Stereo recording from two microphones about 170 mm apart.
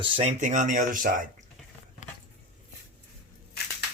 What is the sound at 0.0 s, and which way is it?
Speech, 40° right (ahead or behind).